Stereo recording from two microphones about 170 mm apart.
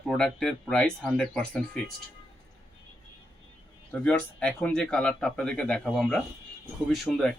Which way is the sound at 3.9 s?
5° left (ahead or behind).